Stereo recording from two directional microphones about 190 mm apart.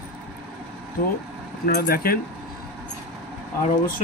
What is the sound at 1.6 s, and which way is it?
Speech, 50° left (ahead or behind).